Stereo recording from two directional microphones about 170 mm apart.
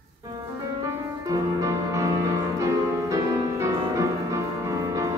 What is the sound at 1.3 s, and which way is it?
Music, 20° right (ahead or behind).